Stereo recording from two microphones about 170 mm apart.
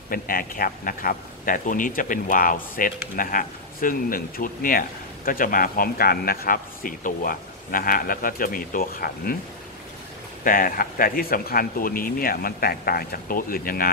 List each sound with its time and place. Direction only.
0.1 s speech: 55° left (ahead or behind)
10.4 s speech: 55° left (ahead or behind)